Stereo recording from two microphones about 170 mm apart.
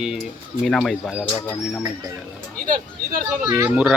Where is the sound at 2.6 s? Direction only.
50° right (ahead or behind).